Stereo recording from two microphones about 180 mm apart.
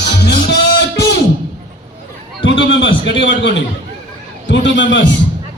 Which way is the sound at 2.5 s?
90° left.